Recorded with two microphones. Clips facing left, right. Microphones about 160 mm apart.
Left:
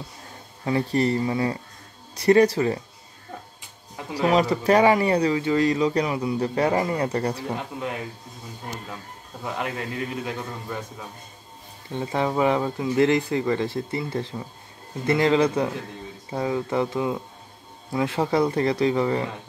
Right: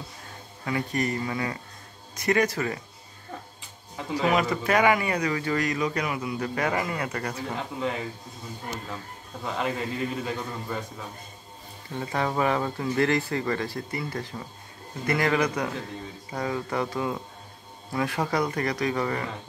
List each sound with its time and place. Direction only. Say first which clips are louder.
0.7 s speech: left 6 dB; 30° left (ahead or behind)
4.3 s speech: left 6 dB; 35° left (ahead or behind)
9.4 s a man's voice: even; 5° left (ahead or behind)
11.9 s speech: left 3 dB; 20° left (ahead or behind)